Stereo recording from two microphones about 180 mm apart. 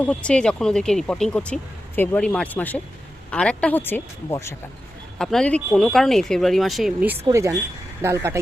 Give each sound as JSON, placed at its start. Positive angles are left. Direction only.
{"t": 0.0, "sound": "speech", "side_deg": 5}
{"t": 5.1, "sound": "speech", "side_deg": 5}
{"t": 7.3, "sound": "speech", "side_deg": -15}